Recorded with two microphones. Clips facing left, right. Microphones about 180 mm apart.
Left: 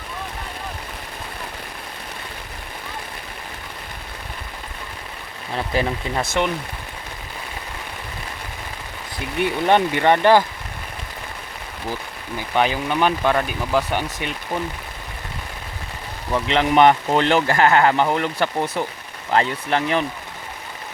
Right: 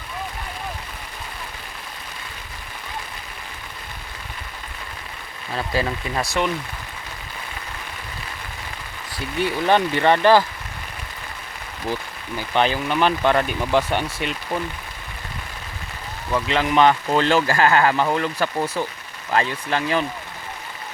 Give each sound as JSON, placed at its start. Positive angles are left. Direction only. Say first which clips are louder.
{"t": 5.5, "sound": "speech", "louder": "left 1 dB", "side_deg": 20}
{"t": 9.4, "sound": "speech", "louder": "left 1 dB", "side_deg": 20}
{"t": 12.5, "sound": "speech", "louder": "even", "side_deg": 15}
{"t": 16.3, "sound": "speech", "louder": "left 2 dB", "side_deg": 25}